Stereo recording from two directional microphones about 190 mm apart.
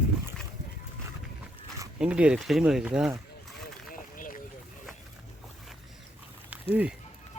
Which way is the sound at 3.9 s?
45° left (ahead or behind).